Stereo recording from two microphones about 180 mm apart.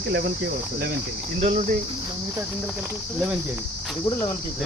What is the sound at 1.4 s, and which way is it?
Cricket, 35° right (ahead or behind).